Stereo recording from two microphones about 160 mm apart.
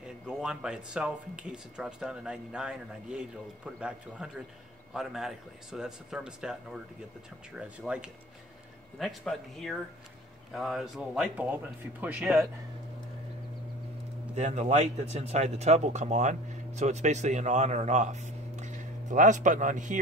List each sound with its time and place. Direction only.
0.0 s speech: 5° right (ahead or behind)
7.5 s speech: 5° right (ahead or behind)
14.3 s speech: 45° right (ahead or behind)